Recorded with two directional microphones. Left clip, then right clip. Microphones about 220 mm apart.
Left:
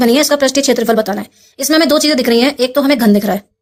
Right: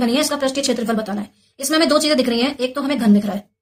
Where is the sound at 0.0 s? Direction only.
40° left (ahead or behind).